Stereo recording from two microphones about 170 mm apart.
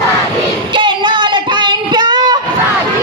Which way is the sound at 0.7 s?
25° right (ahead or behind).